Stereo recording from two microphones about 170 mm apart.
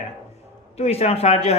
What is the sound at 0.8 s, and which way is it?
Speech, 35° left (ahead or behind).